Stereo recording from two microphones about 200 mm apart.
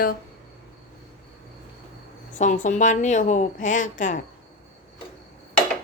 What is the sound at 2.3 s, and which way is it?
A woman's voice, 40° left (ahead or behind).